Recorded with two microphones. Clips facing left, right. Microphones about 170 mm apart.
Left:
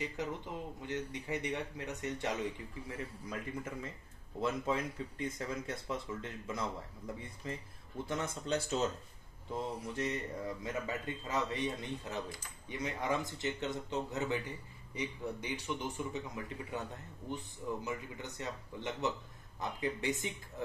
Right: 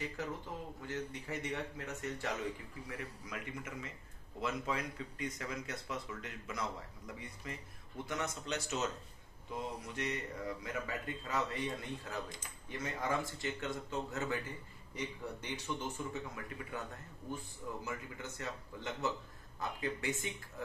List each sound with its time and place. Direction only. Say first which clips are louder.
0.8 s speech: left 2 dB; 20° left (ahead or behind)